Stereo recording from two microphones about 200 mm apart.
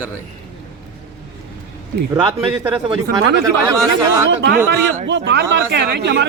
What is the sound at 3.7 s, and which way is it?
Speech, 15° right (ahead or behind).